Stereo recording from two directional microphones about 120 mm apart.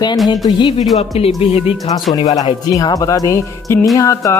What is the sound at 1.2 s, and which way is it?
Speech, 55° left (ahead or behind).